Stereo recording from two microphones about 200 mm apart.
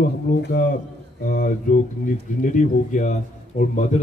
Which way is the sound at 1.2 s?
45° left (ahead or behind).